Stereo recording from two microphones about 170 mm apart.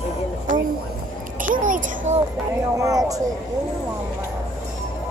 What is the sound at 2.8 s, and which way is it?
Speech, 20° right (ahead or behind).